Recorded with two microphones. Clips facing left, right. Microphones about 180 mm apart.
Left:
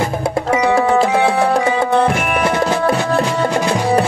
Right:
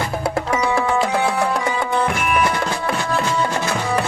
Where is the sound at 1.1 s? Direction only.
60° left (ahead or behind).